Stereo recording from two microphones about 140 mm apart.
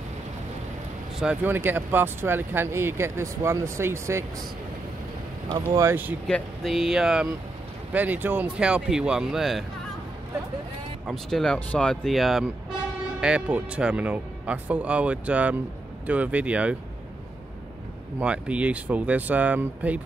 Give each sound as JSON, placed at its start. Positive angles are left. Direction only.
{"t": 1.2, "sound": "speech", "side_deg": -10}
{"t": 5.5, "sound": "speech", "side_deg": -25}
{"t": 6.2, "sound": "speech", "side_deg": 5}
{"t": 11.1, "sound": "speech", "side_deg": 0}
{"t": 18.2, "sound": "speech", "side_deg": -10}